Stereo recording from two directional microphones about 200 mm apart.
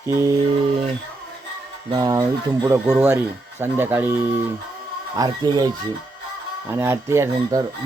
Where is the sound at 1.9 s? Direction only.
20° right (ahead or behind).